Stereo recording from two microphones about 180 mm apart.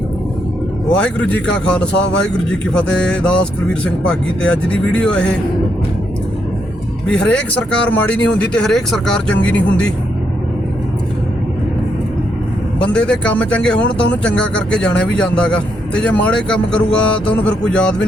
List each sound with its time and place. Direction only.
0.9 s speech: 5° left (ahead or behind)
7.1 s speech: 5° left (ahead or behind)
12.8 s speech: 5° left (ahead or behind)